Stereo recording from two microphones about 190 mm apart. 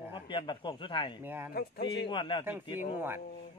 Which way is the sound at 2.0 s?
25° left (ahead or behind).